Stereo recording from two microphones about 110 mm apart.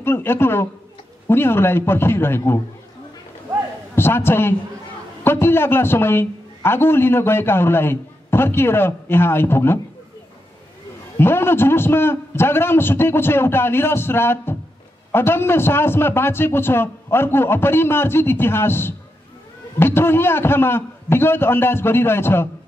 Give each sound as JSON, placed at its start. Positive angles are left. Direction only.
{"t": 0.0, "sound": "a man's voice", "side_deg": 20}
{"t": 3.9, "sound": "a man's voice", "side_deg": 20}
{"t": 11.1, "sound": "a man's voice", "side_deg": 20}